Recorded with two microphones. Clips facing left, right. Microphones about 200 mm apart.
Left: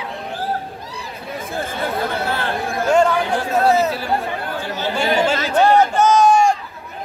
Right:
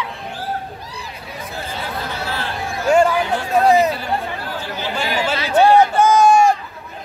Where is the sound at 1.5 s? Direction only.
50° left (ahead or behind).